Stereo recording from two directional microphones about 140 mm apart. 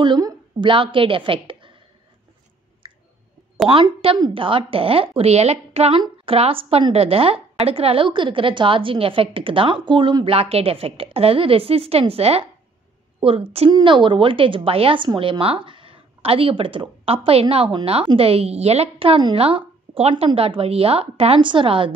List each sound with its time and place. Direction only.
0.0 s a woman's voice: 35° right (ahead or behind)
3.6 s a woman's voice: 35° right (ahead or behind)
13.7 s a woman's voice: 35° right (ahead or behind)